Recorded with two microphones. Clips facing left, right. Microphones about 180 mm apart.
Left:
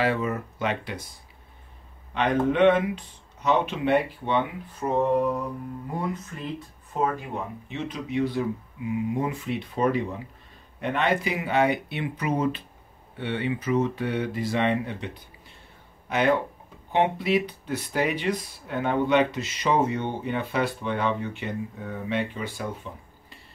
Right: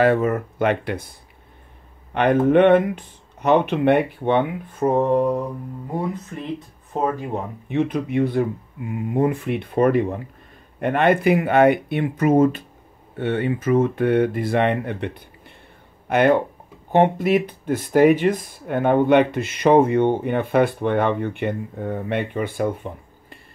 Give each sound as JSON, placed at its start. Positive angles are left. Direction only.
{"t": 0.0, "sound": "speech", "side_deg": -50}
{"t": 2.1, "sound": "speech", "side_deg": -55}
{"t": 7.6, "sound": "speech", "side_deg": -55}
{"t": 16.9, "sound": "speech", "side_deg": -45}